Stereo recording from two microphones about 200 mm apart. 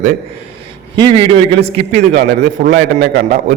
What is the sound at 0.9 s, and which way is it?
A man's voice, 25° right (ahead or behind).